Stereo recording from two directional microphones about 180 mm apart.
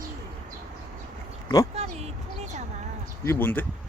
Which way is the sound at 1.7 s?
35° right (ahead or behind).